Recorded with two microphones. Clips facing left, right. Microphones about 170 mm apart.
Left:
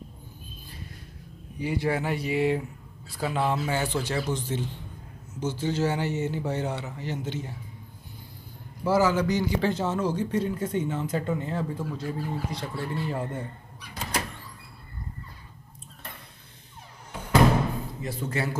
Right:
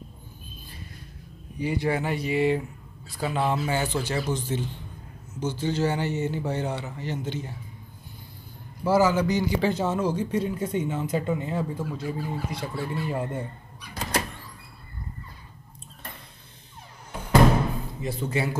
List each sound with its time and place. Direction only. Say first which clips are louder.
1.6 s speech: right 1 dB; centre (ahead or behind)
8.8 s a man's voice: right 2 dB; 5° right (ahead or behind)
18.0 s a man's voice: right 3 dB; 15° right (ahead or behind)